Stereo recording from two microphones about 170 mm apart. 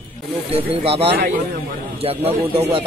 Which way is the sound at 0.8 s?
35° right (ahead or behind).